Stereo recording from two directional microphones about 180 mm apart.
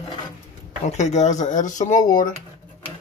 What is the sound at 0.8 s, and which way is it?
Speech, 40° left (ahead or behind).